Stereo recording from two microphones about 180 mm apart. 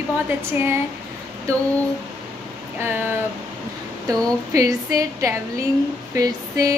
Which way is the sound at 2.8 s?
10° right (ahead or behind).